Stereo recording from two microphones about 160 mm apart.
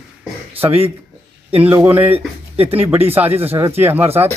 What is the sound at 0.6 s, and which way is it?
Speech, 35° right (ahead or behind).